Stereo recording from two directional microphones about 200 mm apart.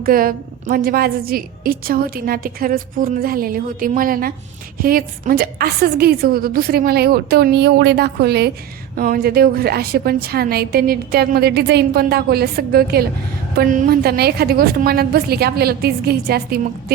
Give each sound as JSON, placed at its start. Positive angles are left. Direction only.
{"t": 0.0, "sound": "a woman's voice", "side_deg": -45}